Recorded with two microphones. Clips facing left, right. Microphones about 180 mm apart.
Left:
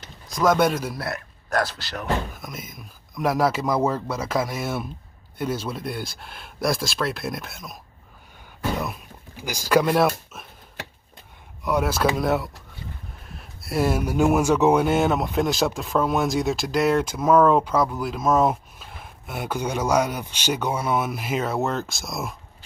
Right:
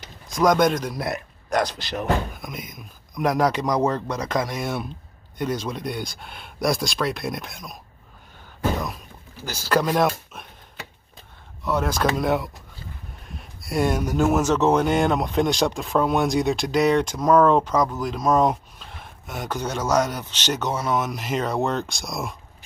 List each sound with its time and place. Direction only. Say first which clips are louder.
0.5 s speech: even; 5° left (ahead or behind)
0.9 s speech: right 3 dB; 20° right (ahead or behind)
2.3 s speech: right 2 dB; centre (ahead or behind)
9.4 s speech: left 2 dB; 10° left (ahead or behind)
11.6 s speech: left 1 dB; 10° left (ahead or behind)